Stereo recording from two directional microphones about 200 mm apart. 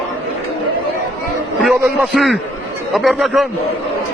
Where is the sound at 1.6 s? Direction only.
Centre (ahead or behind).